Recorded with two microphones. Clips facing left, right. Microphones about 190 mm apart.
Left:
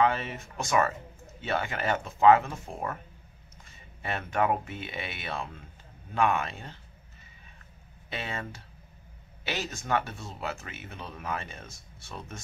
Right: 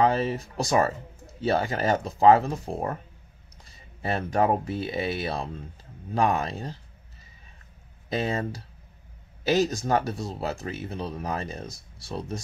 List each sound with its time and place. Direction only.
0.0 s speech: 35° right (ahead or behind)
8.1 s speech: 40° right (ahead or behind)